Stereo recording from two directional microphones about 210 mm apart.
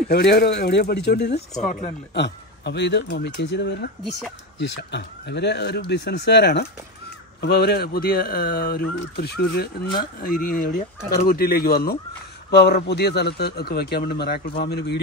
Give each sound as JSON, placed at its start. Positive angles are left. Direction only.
{"t": 0.1, "sound": "speech", "side_deg": 50}